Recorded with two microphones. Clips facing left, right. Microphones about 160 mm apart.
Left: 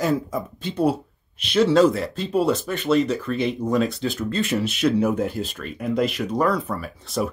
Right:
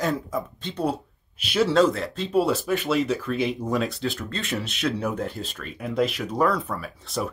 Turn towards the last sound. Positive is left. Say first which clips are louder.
# left 4 dB
turn(degrees=0)  # may be behind; listen again after turning